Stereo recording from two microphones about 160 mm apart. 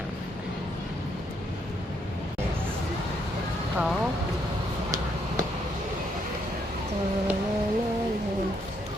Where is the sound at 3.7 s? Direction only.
5° right (ahead or behind).